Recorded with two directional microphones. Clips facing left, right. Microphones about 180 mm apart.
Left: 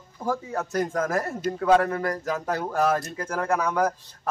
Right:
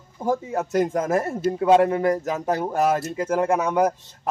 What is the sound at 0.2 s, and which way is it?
A man's voice, 20° right (ahead or behind).